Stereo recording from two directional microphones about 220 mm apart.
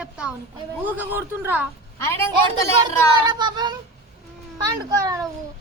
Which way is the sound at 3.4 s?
20° right (ahead or behind).